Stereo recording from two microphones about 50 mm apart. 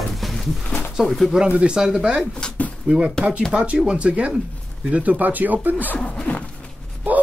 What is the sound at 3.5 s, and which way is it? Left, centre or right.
Speech, centre.